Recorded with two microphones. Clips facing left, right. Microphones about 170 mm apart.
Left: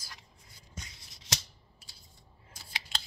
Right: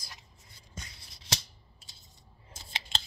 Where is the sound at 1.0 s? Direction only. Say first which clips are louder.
Right 2 dB; 35° right (ahead or behind).